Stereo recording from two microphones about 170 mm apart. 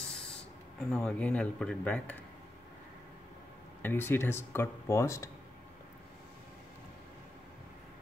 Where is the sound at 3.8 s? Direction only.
10° left (ahead or behind).